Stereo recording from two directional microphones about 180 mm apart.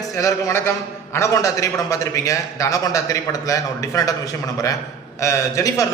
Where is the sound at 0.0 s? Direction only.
20° left (ahead or behind).